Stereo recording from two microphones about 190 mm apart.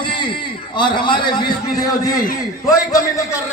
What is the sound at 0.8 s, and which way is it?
Speech, 25° left (ahead or behind).